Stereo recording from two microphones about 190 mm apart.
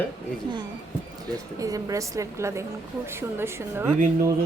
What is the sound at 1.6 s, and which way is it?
A woman's voice, 20° right (ahead or behind).